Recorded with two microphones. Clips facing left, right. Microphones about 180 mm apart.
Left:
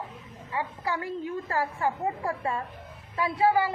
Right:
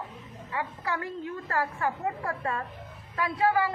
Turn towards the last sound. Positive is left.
turn(degrees=25)  # may be behind; listen again after turning